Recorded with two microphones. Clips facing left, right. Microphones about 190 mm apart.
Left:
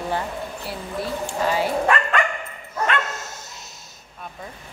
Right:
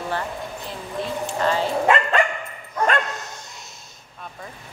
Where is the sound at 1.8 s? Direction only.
25° right (ahead or behind).